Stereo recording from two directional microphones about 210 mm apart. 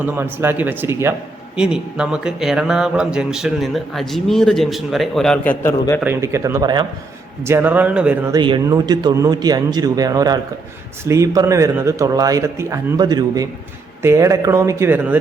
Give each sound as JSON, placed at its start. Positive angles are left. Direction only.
{"t": 0.0, "sound": "speech", "side_deg": -10}
{"t": 6.0, "sound": "speech", "side_deg": -10}